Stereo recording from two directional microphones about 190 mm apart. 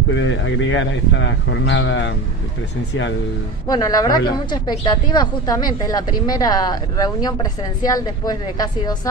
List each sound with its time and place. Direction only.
0.1 s a man's voice: 80° left
3.6 s a woman's voice: 20° left (ahead or behind)